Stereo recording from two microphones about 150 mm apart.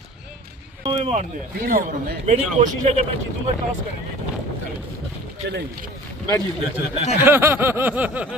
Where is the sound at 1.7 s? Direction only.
70° right (ahead or behind).